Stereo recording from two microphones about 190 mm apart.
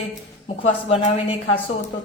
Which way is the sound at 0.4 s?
30° left (ahead or behind).